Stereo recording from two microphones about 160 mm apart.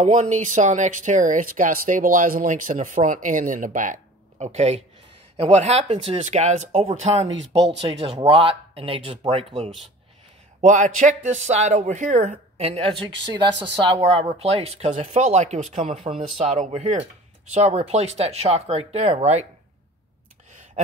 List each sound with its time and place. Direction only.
0.0 s speech: 50° right (ahead or behind)
4.5 s speech: 40° right (ahead or behind)
10.6 s speech: 50° right (ahead or behind)
16.0 s speech: 35° right (ahead or behind)
16.5 s speech: 50° right (ahead or behind)